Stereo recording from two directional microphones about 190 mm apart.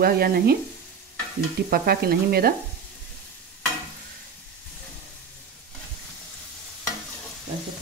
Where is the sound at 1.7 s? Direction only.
55° right (ahead or behind).